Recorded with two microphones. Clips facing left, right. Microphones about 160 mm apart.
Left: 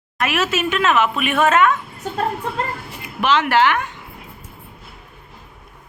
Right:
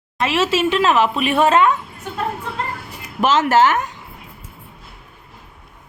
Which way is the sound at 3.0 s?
40° right (ahead or behind).